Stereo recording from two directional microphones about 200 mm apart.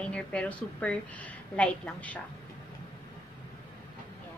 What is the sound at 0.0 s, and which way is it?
A woman's voice, 5° left (ahead or behind).